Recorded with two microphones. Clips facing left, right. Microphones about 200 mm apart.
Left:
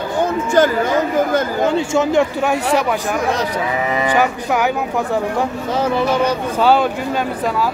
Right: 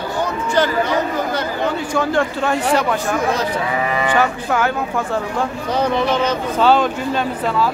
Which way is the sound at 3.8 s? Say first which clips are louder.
Left 2 dB; 15° left (ahead or behind).